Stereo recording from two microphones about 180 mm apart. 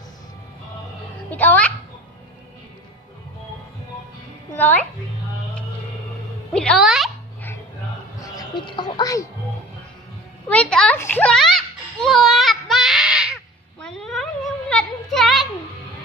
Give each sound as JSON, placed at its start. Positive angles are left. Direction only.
{"t": 1.3, "sound": "a child's voice", "side_deg": 10}
{"t": 4.6, "sound": "a child's voice", "side_deg": 10}
{"t": 6.5, "sound": "music", "side_deg": 5}
{"t": 8.2, "sound": "a sound", "side_deg": 25}
{"t": 10.5, "sound": "a child's voice", "side_deg": 5}
{"t": 11.0, "sound": "music", "side_deg": 10}